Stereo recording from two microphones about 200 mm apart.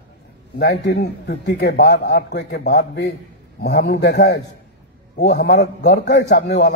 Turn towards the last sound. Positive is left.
turn(degrees=60)  # may be behind; listen again after turning